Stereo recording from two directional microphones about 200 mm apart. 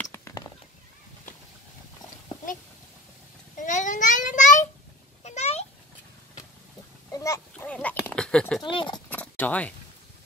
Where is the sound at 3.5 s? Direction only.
40° left (ahead or behind).